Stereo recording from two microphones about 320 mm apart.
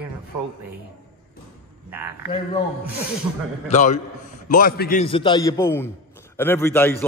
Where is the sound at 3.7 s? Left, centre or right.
Left.